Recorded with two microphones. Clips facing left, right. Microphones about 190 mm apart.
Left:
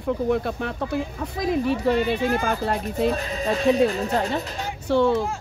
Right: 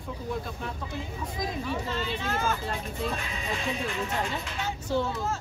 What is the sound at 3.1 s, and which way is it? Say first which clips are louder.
Speech: left 9 dB; 40° left (ahead or behind).